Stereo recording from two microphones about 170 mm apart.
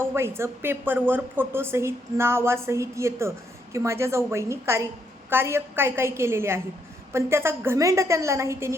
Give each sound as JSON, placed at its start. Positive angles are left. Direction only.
{"t": 0.0, "sound": "speech", "side_deg": -15}